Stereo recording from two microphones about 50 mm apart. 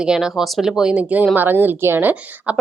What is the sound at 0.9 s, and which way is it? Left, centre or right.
Speech, right.